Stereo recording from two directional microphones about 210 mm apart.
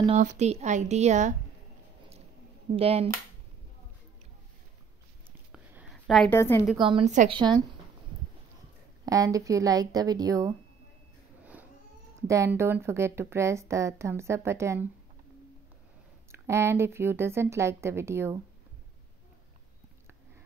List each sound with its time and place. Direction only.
0.0 s speech: 35° right (ahead or behind)
2.7 s speech: 30° right (ahead or behind)
5.5 s a sound: 5° right (ahead or behind)
6.3 s a woman's voice: 10° left (ahead or behind)
6.8 s speech: 25° right (ahead or behind)
7.1 s speech: 35° right (ahead or behind)
9.0 s a woman's voice: 15° right (ahead or behind)
12.2 s a woman's voice: 15° right (ahead or behind)
16.3 s a woman's voice: 10° right (ahead or behind)